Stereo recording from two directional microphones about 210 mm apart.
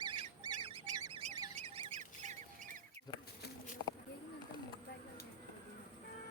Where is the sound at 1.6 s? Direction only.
30° right (ahead or behind).